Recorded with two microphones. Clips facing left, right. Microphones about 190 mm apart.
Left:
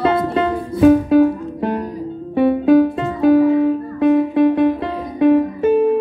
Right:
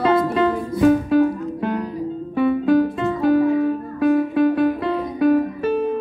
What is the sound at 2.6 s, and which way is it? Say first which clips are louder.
Music: left 4 dB; 50° left (ahead or behind).